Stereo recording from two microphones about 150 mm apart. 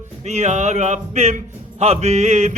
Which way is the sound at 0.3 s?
50° right (ahead or behind).